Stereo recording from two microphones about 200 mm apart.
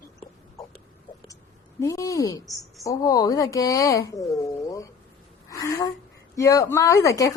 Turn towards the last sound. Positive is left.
turn(degrees=15)  # may be behind; listen again after turning